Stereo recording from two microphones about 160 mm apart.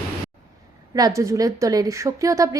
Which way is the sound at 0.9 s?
20° right (ahead or behind).